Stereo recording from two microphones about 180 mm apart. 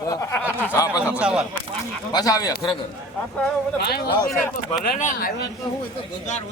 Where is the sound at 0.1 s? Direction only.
15° left (ahead or behind).